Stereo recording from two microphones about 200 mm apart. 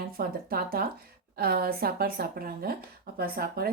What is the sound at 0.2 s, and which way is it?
A woman's voice, 45° right (ahead or behind).